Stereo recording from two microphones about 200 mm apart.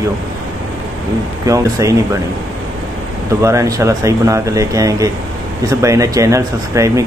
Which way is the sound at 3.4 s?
15° right (ahead or behind).